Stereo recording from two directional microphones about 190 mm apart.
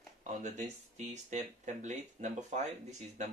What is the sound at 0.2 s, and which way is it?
Speech, 40° right (ahead or behind).